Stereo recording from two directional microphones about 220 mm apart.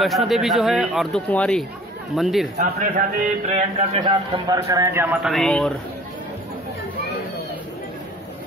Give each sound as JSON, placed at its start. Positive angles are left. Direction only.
{"t": 0.3, "sound": "speech", "side_deg": 0}
{"t": 2.5, "sound": "a man's voice", "side_deg": -35}
{"t": 4.0, "sound": "speech", "side_deg": -15}